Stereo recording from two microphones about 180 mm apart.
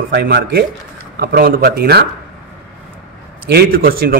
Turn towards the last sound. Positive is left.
turn(degrees=-55)  # may be behind; listen again after turning